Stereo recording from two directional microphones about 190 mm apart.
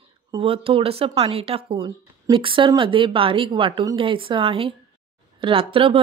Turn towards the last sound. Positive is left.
turn(degrees=-30)  # may be behind; listen again after turning